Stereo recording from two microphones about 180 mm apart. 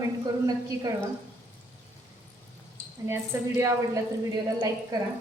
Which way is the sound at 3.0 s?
15° right (ahead or behind).